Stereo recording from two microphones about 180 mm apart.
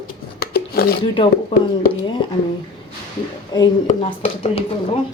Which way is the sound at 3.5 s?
25° left (ahead or behind).